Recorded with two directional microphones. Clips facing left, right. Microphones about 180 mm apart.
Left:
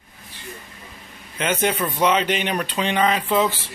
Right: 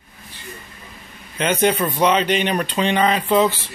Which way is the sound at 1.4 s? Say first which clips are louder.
Right 4 dB; 5° left (ahead or behind).